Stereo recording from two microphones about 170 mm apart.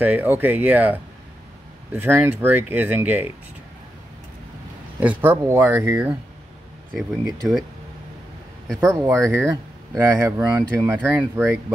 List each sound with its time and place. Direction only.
0.0 s speech: 10° right (ahead or behind)
5.0 s speech: 10° right (ahead or behind)
8.8 s speech: 20° right (ahead or behind)